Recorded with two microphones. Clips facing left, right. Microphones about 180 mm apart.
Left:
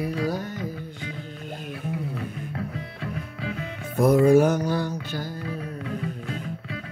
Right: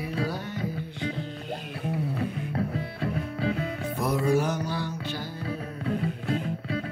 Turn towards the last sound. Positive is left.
turn(degrees=-35)  # may be behind; listen again after turning